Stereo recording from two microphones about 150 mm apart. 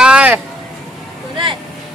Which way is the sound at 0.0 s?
10° right (ahead or behind).